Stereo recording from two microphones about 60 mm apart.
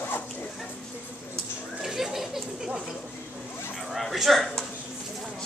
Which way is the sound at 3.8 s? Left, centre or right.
Centre.